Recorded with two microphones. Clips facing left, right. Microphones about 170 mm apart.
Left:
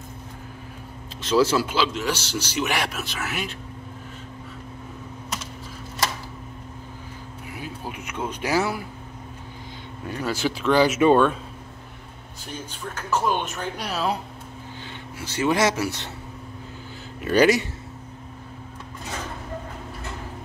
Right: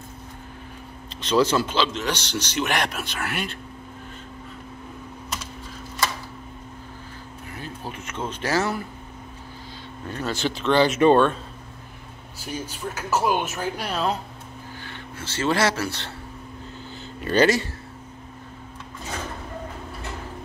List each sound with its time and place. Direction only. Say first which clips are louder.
1.2 s a man's voice: even; 5° left (ahead or behind)
7.5 s a sound: left 1 dB; 10° left (ahead or behind)
10.0 s speech: left 1 dB; 10° left (ahead or behind)
12.4 s a man's voice: right 4 dB; 10° right (ahead or behind)
14.8 s speech: left 1 dB; 15° left (ahead or behind)
17.2 s speech: left 1 dB; 10° left (ahead or behind)